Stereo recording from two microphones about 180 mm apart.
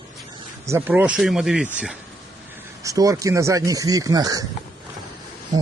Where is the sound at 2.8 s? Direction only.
20° right (ahead or behind).